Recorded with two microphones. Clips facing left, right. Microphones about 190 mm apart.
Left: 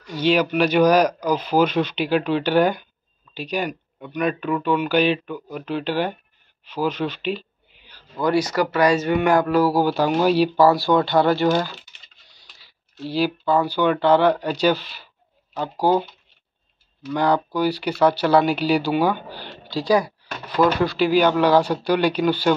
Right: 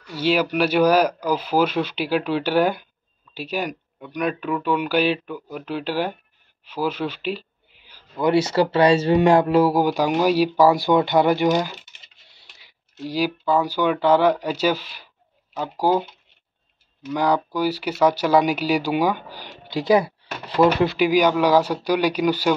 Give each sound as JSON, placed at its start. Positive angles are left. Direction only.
{"t": 0.0, "sound": "speech", "side_deg": -5}
{"t": 6.6, "sound": "a sound", "side_deg": -5}
{"t": 8.2, "sound": "speech", "side_deg": -25}
{"t": 12.4, "sound": "a sound", "side_deg": -20}
{"t": 13.0, "sound": "speech", "side_deg": -10}
{"t": 19.7, "sound": "speech", "side_deg": -20}